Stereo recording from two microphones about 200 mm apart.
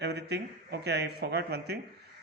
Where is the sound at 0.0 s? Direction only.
55° right (ahead or behind).